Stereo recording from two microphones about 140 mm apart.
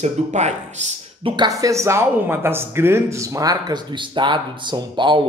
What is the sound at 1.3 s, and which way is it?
Speech, 25° right (ahead or behind).